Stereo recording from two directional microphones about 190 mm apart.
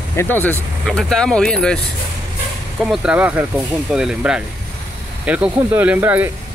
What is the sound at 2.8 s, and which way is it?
Speech, 5° right (ahead or behind).